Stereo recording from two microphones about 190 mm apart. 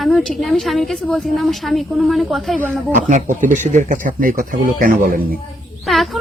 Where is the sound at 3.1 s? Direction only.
40° right (ahead or behind).